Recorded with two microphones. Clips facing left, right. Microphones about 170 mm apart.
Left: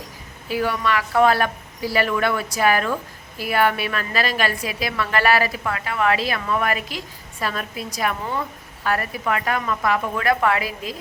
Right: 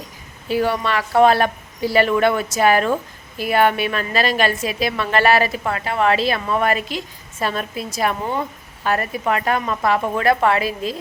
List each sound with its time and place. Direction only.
0.4 s speech: 25° right (ahead or behind)